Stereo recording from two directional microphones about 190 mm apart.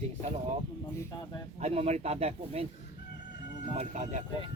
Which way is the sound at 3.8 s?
35° right (ahead or behind).